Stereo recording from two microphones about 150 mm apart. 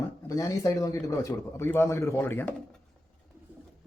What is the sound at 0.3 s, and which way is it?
A man's voice, 20° left (ahead or behind).